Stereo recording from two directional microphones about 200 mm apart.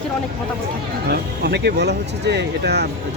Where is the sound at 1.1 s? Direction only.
55° right (ahead or behind).